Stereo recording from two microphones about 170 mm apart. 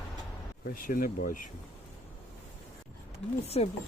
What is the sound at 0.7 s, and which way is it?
Speech, 55° left (ahead or behind).